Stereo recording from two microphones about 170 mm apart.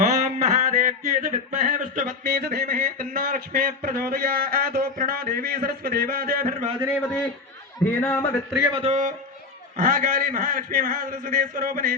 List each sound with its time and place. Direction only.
0.0 s a sound: 50° right (ahead or behind)
8.0 s a man's voice: 10° left (ahead or behind)
8.7 s a man's voice: 40° right (ahead or behind); by 11.9 s 55° right (ahead or behind)